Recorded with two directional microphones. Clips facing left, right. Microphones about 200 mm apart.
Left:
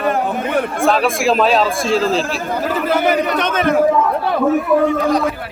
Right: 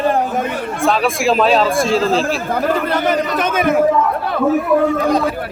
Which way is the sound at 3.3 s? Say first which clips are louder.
Even; 10° right (ahead or behind).